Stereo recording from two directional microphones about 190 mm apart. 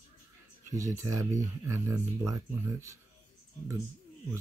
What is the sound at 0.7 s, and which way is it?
Speech, 15° right (ahead or behind).